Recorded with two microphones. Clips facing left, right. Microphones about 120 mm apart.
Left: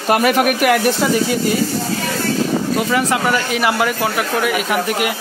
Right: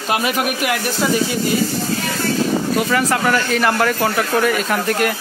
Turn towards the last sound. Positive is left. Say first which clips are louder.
# even
turn(degrees=10)  # may be behind; listen again after turning